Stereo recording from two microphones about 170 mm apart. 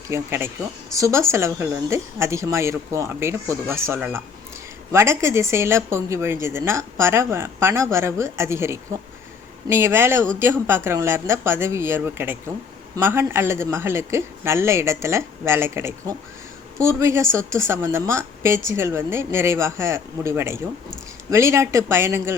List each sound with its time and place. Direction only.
0.1 s speech: 15° right (ahead or behind)